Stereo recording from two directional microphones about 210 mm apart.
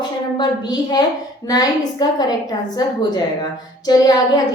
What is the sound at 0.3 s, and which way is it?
A woman's voice, 20° left (ahead or behind).